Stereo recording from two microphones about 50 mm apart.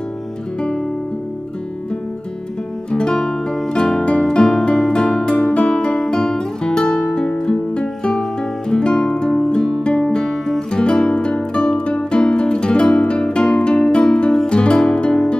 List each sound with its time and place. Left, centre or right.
2.9 s music: centre